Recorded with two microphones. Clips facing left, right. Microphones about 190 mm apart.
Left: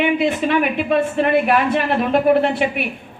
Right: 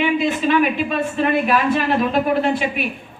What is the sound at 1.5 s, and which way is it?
Speech, 55° left (ahead or behind).